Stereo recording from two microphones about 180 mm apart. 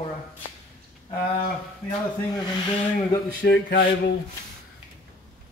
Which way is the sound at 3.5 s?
90° left.